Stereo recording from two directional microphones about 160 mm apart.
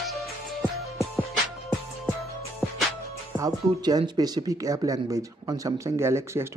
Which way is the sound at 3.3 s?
25° right (ahead or behind).